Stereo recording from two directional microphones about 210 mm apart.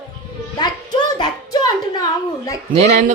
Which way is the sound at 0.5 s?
20° left (ahead or behind).